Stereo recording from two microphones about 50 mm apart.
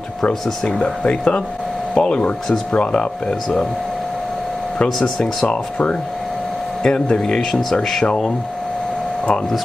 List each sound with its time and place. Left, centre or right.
0.7 s speech: left
5.2 s speech: left